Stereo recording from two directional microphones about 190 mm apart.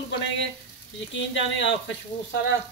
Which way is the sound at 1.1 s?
75° left (ahead or behind).